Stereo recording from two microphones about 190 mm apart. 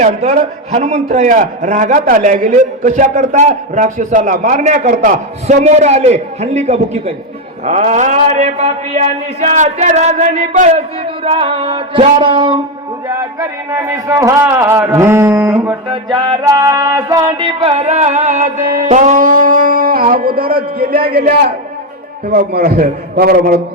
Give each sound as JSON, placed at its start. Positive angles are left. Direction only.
{"t": 0.0, "sound": "a man's voice", "side_deg": -35}
{"t": 12.2, "sound": "music", "side_deg": -25}
{"t": 13.1, "sound": "speech", "side_deg": -15}
{"t": 16.1, "sound": "music", "side_deg": -25}
{"t": 17.6, "sound": "music", "side_deg": -30}
{"t": 20.7, "sound": "a man's voice", "side_deg": -50}